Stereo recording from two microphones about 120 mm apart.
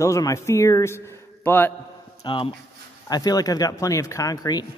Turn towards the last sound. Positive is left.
turn(degrees=30)  # may be behind; listen again after turning